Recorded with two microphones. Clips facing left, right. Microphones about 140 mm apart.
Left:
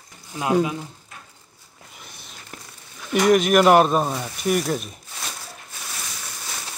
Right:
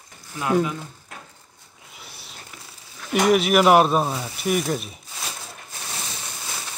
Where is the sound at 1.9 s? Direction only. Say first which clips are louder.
Right 1 dB; 5° right (ahead or behind).